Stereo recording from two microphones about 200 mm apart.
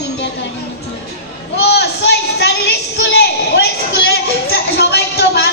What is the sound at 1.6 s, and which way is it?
A woman's voice, 55° left (ahead or behind).